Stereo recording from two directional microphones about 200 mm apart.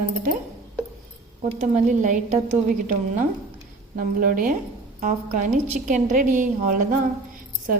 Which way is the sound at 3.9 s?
45° right (ahead or behind).